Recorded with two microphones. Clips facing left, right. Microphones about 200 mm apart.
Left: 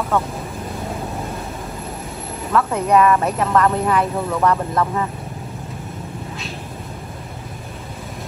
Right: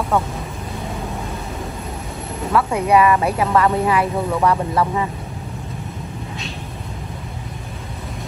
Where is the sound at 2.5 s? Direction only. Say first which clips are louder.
Even; 10° right (ahead or behind).